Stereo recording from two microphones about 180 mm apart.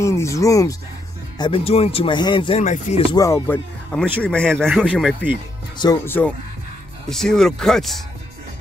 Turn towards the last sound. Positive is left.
turn(degrees=0)  # may be behind; listen again after turning